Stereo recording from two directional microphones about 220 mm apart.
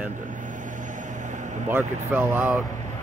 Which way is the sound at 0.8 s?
35° right (ahead or behind).